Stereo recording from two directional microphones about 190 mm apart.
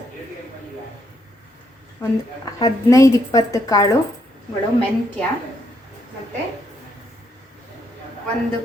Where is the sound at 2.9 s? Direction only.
15° left (ahead or behind).